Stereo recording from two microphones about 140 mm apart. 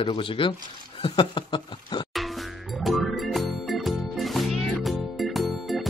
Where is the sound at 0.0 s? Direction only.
40° left (ahead or behind).